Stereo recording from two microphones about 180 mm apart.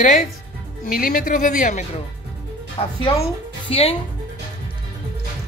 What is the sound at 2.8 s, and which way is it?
Speech, 30° left (ahead or behind).